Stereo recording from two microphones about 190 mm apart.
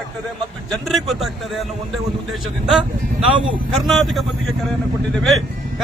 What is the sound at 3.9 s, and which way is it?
Speech, centre (ahead or behind).